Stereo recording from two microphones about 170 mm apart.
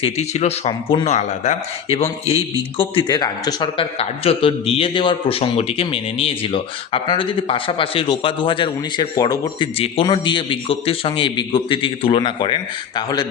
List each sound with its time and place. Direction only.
0.0 s a man's voice: 40° left (ahead or behind); by 13.2 s 25° left (ahead or behind)